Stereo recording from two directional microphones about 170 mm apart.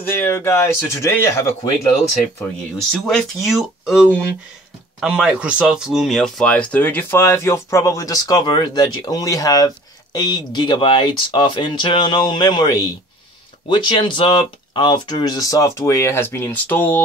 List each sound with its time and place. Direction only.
0.2 s speech: 15° left (ahead or behind)
2.9 s speech: centre (ahead or behind)